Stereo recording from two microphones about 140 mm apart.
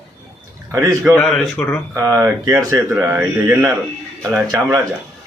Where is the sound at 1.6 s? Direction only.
15° left (ahead or behind).